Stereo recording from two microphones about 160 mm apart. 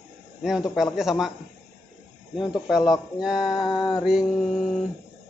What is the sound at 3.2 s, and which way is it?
Speech, 5° right (ahead or behind).